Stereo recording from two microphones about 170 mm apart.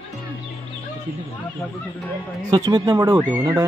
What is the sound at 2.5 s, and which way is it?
Speech, 20° right (ahead or behind).